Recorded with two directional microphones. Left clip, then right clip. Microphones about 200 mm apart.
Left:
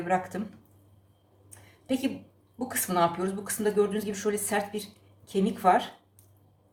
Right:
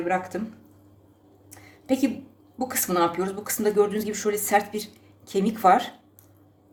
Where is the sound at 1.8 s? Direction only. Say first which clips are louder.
Right 6 dB; 35° right (ahead or behind).